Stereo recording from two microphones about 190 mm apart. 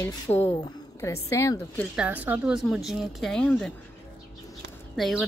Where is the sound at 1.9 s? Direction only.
5° right (ahead or behind).